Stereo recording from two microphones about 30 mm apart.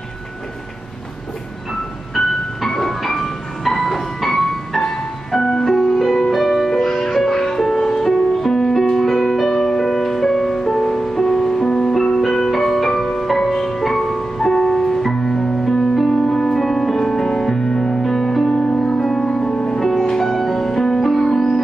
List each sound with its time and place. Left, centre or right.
2.1 s music: centre
11.6 s music: left
12.4 s music: centre
15.1 s music: left
15.6 s music: centre
18.0 s music: centre
18.5 s music: left
18.9 s music: centre
19.2 s music: left
20.0 s music: centre